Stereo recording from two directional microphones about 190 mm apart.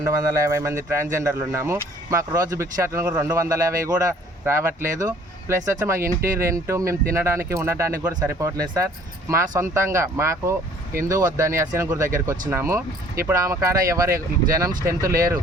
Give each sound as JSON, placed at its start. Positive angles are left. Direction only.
{"t": 0.5, "sound": "speech", "side_deg": -15}